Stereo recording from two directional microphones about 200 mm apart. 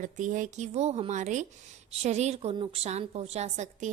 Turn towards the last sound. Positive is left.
turn(degrees=-35)  # may be behind; listen again after turning